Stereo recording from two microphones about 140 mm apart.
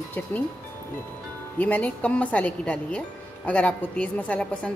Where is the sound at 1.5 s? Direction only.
10° left (ahead or behind).